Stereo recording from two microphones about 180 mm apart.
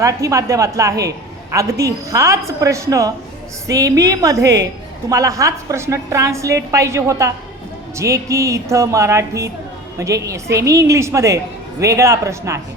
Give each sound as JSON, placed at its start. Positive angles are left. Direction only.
{"t": 0.0, "sound": "a woman's voice", "side_deg": -15}